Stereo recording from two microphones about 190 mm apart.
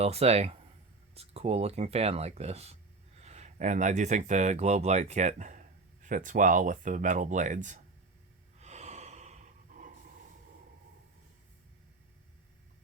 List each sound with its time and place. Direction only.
0.0 s speech: 35° right (ahead or behind)
8.5 s snort: 35° right (ahead or behind)